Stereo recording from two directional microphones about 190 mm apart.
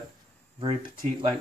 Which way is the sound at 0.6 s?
25° right (ahead or behind).